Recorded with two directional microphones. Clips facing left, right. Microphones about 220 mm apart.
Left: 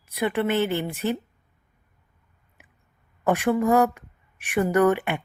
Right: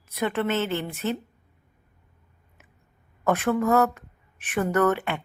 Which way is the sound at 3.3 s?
15° left (ahead or behind).